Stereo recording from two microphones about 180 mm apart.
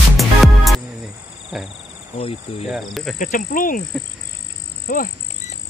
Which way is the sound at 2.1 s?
30° left (ahead or behind).